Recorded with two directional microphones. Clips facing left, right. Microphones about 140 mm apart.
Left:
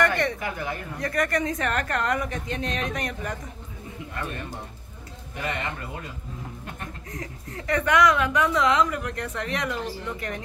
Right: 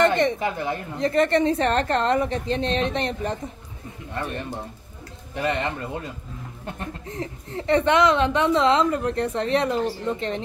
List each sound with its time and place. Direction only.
0.0 s a woman's voice: 20° right (ahead or behind)
5.3 s a woman's voice: 30° right (ahead or behind)